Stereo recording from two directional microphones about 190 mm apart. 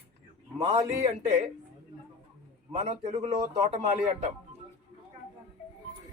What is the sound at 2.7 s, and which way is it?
A man's voice, 35° right (ahead or behind).